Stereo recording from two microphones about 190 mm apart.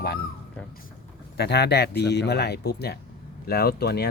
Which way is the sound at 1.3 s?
60° left (ahead or behind).